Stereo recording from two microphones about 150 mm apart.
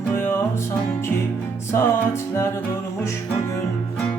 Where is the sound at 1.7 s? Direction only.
20° left (ahead or behind).